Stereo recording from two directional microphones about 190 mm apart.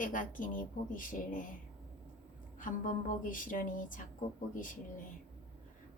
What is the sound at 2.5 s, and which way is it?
Speech, 45° left (ahead or behind).